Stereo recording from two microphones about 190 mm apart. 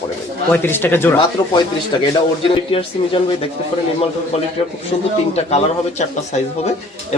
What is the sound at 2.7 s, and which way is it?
Speech, 30° left (ahead or behind).